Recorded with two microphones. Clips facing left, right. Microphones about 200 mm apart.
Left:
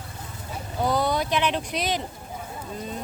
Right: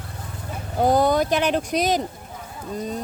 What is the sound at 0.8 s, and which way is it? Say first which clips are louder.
Speech: right 6 dB; 45° right (ahead or behind).